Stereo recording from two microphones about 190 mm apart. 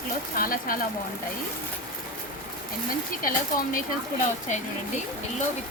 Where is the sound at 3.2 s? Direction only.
45° left (ahead or behind).